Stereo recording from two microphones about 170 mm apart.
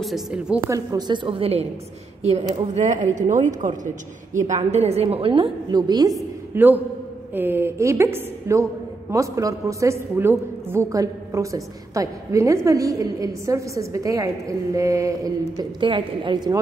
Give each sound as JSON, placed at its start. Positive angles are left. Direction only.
{"t": 0.0, "sound": "a woman's voice", "side_deg": -5}
{"t": 0.7, "sound": "a woman's voice", "side_deg": -20}
{"t": 15.5, "sound": "a woman's voice", "side_deg": -30}